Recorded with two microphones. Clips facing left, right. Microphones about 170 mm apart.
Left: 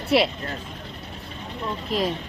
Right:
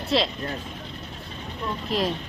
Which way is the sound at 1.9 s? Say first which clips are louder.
Left 1 dB; centre (ahead or behind).